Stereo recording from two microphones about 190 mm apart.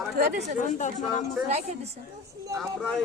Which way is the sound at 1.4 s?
35° right (ahead or behind).